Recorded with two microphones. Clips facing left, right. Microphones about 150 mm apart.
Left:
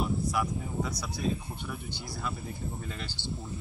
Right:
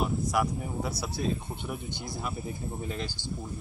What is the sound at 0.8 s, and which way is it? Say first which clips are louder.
Speech: right 3 dB; 30° right (ahead or behind).